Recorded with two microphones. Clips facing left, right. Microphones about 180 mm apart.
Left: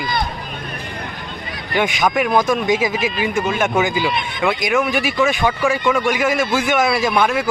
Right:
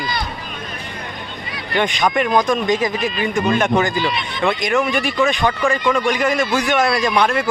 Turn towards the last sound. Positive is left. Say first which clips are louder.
# even
turn(degrees=5)  # may be behind; listen again after turning